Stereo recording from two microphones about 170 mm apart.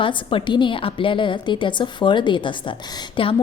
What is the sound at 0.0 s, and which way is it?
A woman's voice, 30° left (ahead or behind).